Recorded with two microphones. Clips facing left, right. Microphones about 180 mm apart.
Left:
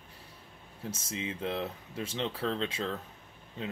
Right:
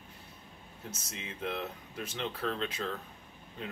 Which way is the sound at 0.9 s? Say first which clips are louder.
Left 8 dB; 30° left (ahead or behind).